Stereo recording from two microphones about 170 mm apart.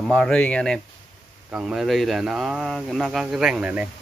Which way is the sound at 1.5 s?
5° right (ahead or behind).